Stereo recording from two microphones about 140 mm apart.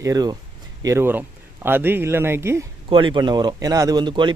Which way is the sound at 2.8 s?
35° right (ahead or behind).